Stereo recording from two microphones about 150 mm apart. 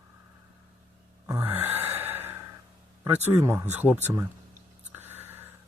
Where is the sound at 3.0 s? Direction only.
15° right (ahead or behind).